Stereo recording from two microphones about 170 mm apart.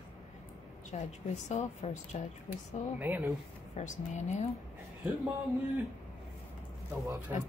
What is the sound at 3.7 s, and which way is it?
Speech, 45° left (ahead or behind).